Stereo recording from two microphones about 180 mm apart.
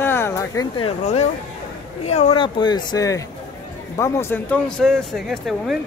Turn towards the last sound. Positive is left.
turn(degrees=0)  # may be behind; listen again after turning